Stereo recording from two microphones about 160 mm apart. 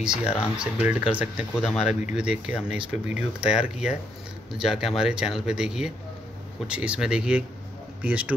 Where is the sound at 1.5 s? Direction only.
10° left (ahead or behind).